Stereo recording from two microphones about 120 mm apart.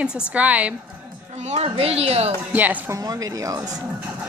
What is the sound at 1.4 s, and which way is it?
Speech, 60° right (ahead or behind).